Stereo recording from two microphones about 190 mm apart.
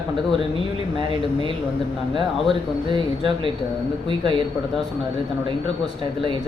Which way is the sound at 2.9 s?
25° right (ahead or behind).